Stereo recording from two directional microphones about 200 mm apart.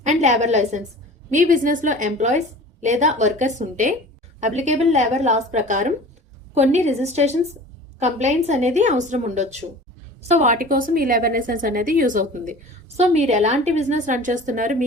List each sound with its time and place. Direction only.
0.0 s a woman's voice: 35° right (ahead or behind)